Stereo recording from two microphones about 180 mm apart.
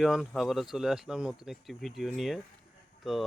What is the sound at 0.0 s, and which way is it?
Speech, centre (ahead or behind).